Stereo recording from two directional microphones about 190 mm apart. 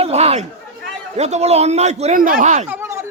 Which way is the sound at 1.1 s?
35° right (ahead or behind).